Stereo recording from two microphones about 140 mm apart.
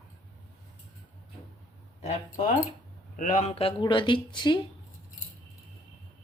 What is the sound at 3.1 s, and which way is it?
Speech, 65° left (ahead or behind).